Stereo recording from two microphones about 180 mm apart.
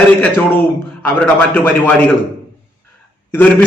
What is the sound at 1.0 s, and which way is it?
Speech, 10° left (ahead or behind).